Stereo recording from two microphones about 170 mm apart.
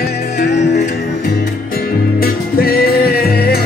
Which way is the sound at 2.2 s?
65° left (ahead or behind).